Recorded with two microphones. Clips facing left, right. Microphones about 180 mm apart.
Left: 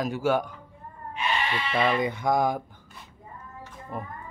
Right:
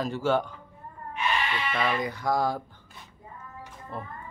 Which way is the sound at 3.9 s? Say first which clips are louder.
Left 2 dB; 15° left (ahead or behind).